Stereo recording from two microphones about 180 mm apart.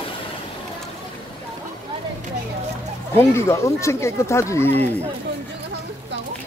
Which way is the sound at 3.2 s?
15° left (ahead or behind).